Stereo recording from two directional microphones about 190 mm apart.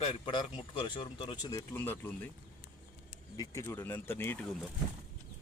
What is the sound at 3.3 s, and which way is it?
Speech, 15° left (ahead or behind).